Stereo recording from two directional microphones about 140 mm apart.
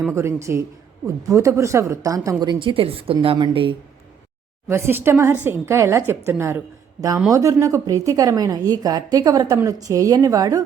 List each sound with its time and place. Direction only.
0.1 s a woman's voice: 20° right (ahead or behind); by 3.8 s 35° right (ahead or behind)
4.7 s a woman's voice: 15° right (ahead or behind)